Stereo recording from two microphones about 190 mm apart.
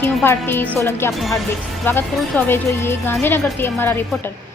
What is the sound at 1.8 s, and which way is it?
A woman's voice, 10° left (ahead or behind).